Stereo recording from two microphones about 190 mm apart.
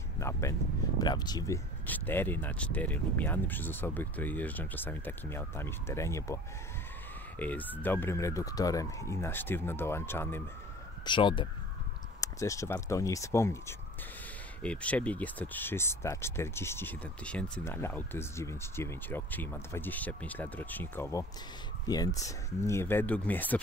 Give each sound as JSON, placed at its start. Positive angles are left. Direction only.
{"t": 0.2, "sound": "a sound", "side_deg": 15}
{"t": 1.9, "sound": "speech", "side_deg": 10}
{"t": 11.1, "sound": "speech", "side_deg": 25}